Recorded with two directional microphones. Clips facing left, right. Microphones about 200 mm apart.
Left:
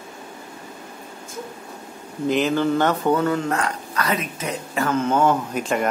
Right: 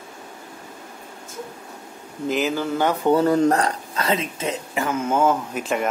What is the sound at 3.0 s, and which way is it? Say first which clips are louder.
Speech: right 3 dB; 35° right (ahead or behind).